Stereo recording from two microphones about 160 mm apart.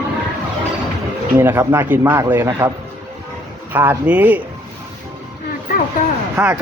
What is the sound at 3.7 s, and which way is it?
Speech, 10° right (ahead or behind).